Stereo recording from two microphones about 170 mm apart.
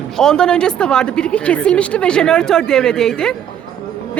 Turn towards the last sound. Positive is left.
turn(degrees=5)  # may be behind; listen again after turning